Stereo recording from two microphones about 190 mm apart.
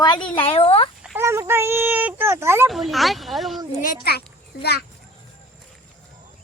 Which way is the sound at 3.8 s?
50° left (ahead or behind).